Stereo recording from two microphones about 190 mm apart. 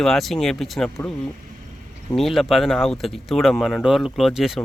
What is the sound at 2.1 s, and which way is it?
Speech, centre (ahead or behind).